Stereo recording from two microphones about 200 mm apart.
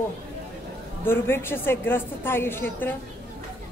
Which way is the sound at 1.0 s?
10° left (ahead or behind).